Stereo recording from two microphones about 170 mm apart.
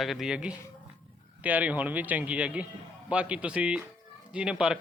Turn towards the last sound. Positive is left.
turn(degrees=-5)  # may be behind; listen again after turning